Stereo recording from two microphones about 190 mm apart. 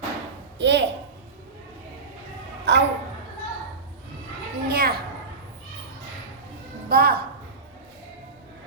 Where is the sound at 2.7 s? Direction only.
65° right (ahead or behind).